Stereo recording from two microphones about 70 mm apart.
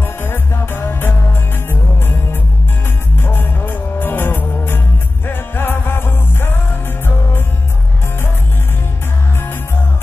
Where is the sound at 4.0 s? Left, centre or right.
Left.